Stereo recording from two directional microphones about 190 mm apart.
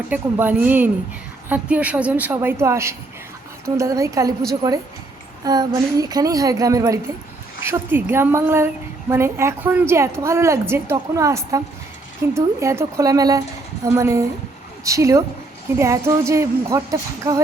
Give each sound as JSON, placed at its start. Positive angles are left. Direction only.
{"t": 0.1, "sound": "a woman's voice", "side_deg": -10}
{"t": 5.5, "sound": "a woman's voice", "side_deg": -20}